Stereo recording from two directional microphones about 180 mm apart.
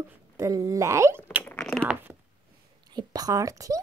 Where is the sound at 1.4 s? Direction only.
5° left (ahead or behind).